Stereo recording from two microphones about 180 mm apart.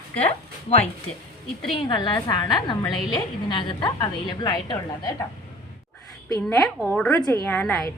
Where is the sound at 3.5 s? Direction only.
25° left (ahead or behind).